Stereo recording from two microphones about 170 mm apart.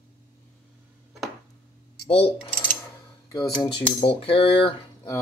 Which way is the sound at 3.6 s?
30° left (ahead or behind).